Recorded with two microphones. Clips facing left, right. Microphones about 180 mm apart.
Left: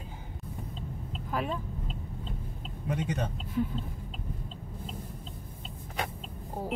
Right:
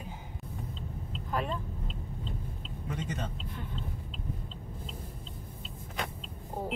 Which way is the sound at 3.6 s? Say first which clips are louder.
Left 17 dB; 5° left (ahead or behind).